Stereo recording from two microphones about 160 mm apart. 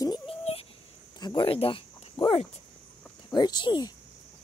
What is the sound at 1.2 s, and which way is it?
Speech, 30° left (ahead or behind).